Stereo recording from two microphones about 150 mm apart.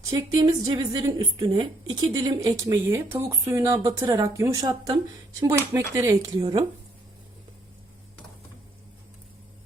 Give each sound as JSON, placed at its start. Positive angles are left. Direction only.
{"t": 0.1, "sound": "a woman's voice", "side_deg": -25}